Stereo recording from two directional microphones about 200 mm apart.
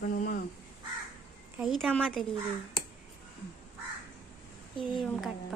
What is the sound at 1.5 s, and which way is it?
Speech, centre (ahead or behind).